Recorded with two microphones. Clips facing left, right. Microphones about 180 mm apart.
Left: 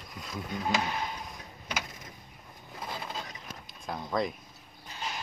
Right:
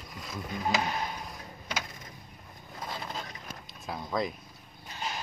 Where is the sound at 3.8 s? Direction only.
Centre (ahead or behind).